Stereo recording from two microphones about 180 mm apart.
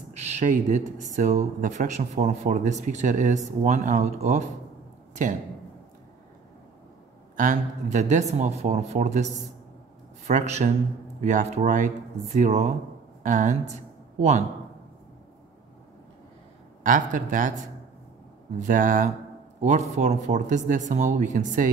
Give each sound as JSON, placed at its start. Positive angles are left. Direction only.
{"t": 0.1, "sound": "speech", "side_deg": -35}
{"t": 7.3, "sound": "speech", "side_deg": -45}
{"t": 16.8, "sound": "speech", "side_deg": -45}
{"t": 18.6, "sound": "speech", "side_deg": -45}